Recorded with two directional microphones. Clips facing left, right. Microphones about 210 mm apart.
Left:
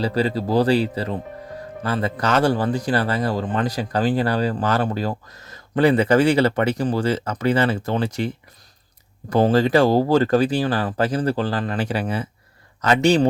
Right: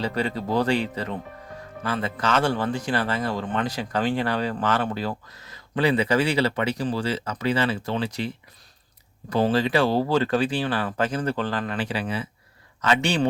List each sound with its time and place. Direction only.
0.0 s a man's voice: 35° left (ahead or behind)
9.3 s a man's voice: 45° left (ahead or behind)